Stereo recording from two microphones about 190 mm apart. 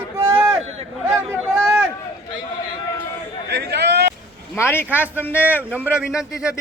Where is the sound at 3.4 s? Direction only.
60° right (ahead or behind).